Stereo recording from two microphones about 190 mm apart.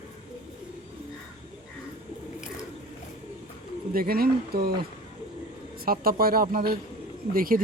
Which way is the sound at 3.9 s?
50° right (ahead or behind).